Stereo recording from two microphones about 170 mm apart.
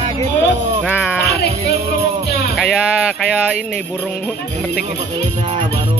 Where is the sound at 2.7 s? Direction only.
5° right (ahead or behind).